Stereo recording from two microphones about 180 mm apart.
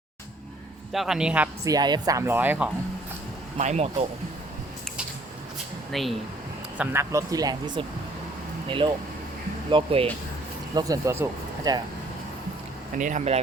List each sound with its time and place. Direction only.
0.9 s a man's voice: centre (ahead or behind)
1.6 s speech: 20° right (ahead or behind)
3.6 s speech: 40° right (ahead or behind)
5.9 s a man's voice: centre (ahead or behind)
6.7 s speech: 15° right (ahead or behind)
9.7 s speech: 30° right (ahead or behind)
10.8 s speech: 20° right (ahead or behind)
13.0 s speech: 45° right (ahead or behind)